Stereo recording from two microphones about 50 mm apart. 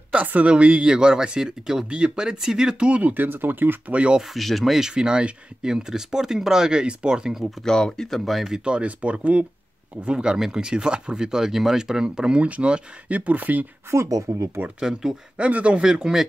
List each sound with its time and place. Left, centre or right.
0.1 s speech: right; by 2.9 s centre
2.9 s speech: right
3.8 s speech: right
4.2 s speech: centre
4.7 s speech: centre
7.6 s speech: centre
8.3 s speech: centre
8.5 s speech: right
10.0 s speech: centre; by 13.7 s right
13.8 s speech: right
14.8 s speech: centre
15.3 s speech: right
15.8 s speech: centre